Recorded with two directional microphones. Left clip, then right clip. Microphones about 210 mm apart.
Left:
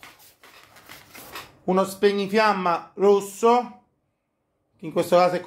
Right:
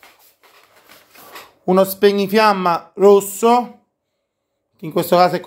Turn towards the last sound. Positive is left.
turn(degrees=-50)  # may be behind; listen again after turning